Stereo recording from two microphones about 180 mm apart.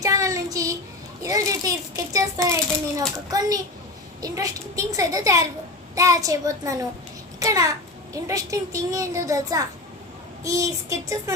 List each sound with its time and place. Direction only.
0.0 s child singing: 20° right (ahead or behind)
1.2 s a child's voice: 20° right (ahead or behind)